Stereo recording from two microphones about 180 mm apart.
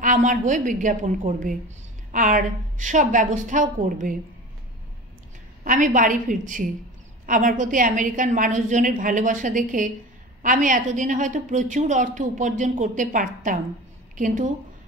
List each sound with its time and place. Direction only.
0.0 s a woman's voice: 45° right (ahead or behind)
5.6 s a woman's voice: 45° right (ahead or behind)